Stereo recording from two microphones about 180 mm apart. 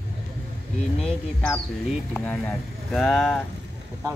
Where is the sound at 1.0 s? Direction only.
5° left (ahead or behind).